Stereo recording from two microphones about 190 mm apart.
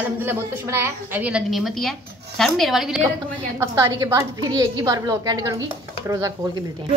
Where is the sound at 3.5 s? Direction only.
15° right (ahead or behind).